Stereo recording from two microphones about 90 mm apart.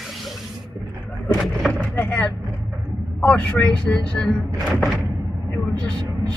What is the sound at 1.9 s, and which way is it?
A man's voice, 15° left (ahead or behind).